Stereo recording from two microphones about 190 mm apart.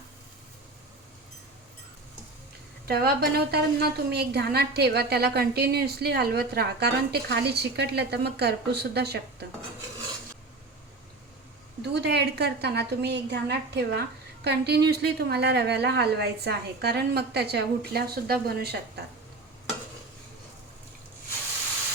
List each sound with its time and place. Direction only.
2.8 s a woman's voice: 55° right (ahead or behind)
11.8 s a woman's voice: 60° right (ahead or behind)